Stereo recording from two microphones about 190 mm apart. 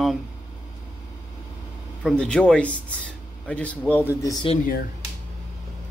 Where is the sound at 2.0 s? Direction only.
Centre (ahead or behind).